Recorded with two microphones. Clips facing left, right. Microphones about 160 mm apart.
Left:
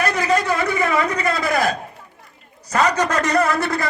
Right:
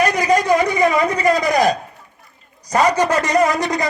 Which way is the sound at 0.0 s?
15° right (ahead or behind).